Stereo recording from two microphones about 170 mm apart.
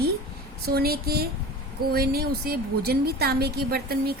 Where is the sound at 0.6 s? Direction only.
65° right (ahead or behind).